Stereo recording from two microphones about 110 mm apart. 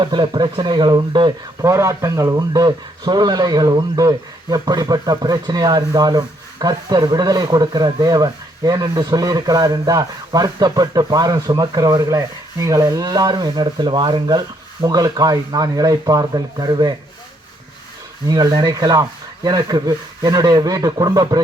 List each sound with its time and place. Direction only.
0.0 s speech: 45° right (ahead or behind)
1.6 s a man's voice: 25° right (ahead or behind)
18.3 s a man's voice: 40° right (ahead or behind)